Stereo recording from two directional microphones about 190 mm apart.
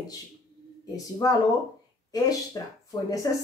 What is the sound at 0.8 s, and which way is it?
Speech, 20° left (ahead or behind).